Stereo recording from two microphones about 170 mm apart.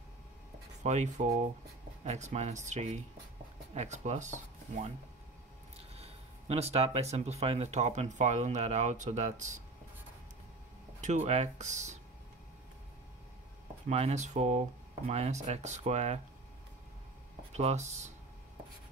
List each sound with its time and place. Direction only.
0.8 s speech: 45° right (ahead or behind)
5.9 s speech: 35° right (ahead or behind)
11.0 s speech: 45° right (ahead or behind)
13.8 s speech: 40° right (ahead or behind)
17.5 s speech: 40° right (ahead or behind)